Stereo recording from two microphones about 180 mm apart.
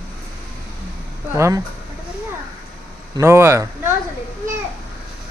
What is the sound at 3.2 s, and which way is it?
Speech, 15° right (ahead or behind).